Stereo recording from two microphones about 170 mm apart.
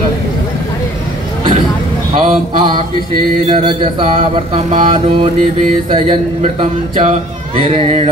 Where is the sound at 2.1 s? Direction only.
35° right (ahead or behind).